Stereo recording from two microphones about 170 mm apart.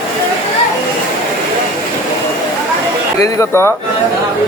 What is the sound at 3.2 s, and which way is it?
Speech, 15° left (ahead or behind).